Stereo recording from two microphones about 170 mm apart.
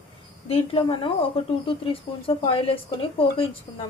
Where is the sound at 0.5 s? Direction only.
30° left (ahead or behind).